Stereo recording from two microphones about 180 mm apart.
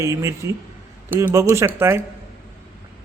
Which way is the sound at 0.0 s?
15° right (ahead or behind).